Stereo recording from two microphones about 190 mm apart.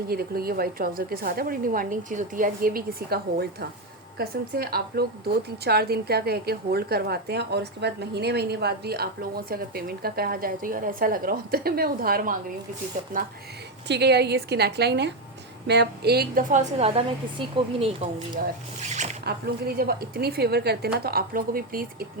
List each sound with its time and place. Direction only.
0.1 s a woman's voice: 55° right (ahead or behind)
13.8 s a woman's voice: 60° right (ahead or behind); by 19.1 s 35° right (ahead or behind)
19.2 s a woman's voice: 55° right (ahead or behind)